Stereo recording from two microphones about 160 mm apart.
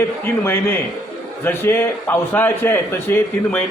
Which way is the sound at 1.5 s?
15° left (ahead or behind).